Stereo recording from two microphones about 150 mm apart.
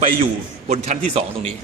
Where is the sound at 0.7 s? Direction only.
50° right (ahead or behind).